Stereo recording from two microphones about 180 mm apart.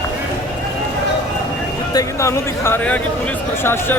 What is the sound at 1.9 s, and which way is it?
Speech, 20° left (ahead or behind).